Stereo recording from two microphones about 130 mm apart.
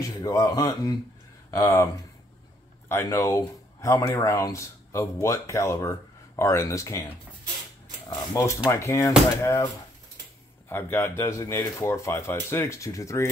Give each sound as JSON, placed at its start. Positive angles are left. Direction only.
{"t": 0.0, "sound": "speech", "side_deg": 25}
{"t": 2.9, "sound": "speech", "side_deg": 20}
{"t": 8.3, "sound": "speech", "side_deg": 25}
{"t": 10.7, "sound": "speech", "side_deg": 15}